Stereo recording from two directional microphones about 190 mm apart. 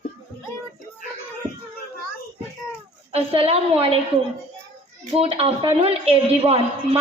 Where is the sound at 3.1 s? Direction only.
30° right (ahead or behind).